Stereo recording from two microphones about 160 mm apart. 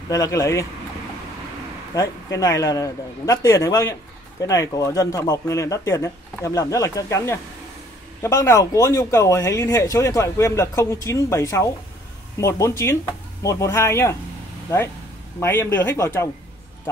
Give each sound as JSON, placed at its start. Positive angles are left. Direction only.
{"t": 0.1, "sound": "speech", "side_deg": 20}
{"t": 2.0, "sound": "speech", "side_deg": 20}
{"t": 15.4, "sound": "speech", "side_deg": 15}